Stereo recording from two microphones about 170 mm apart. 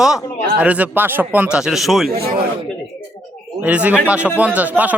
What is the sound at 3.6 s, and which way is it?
Speech, 5° right (ahead or behind).